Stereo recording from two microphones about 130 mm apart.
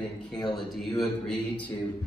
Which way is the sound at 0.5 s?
Centre (ahead or behind).